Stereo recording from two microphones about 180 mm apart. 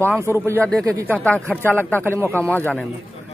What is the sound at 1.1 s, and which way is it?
Speech, 10° left (ahead or behind).